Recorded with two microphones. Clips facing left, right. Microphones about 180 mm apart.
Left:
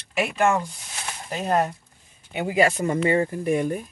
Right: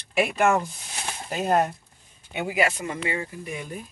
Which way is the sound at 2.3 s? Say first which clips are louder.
Left 4 dB; 30° left (ahead or behind).